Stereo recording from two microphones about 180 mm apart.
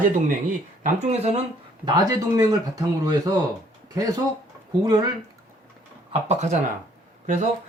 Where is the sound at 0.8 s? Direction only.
35° right (ahead or behind).